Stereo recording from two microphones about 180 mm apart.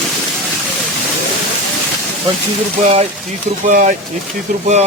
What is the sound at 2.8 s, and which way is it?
Speech, 35° right (ahead or behind).